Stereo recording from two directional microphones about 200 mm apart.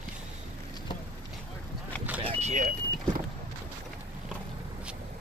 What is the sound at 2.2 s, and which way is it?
Vehicle, 35° right (ahead or behind).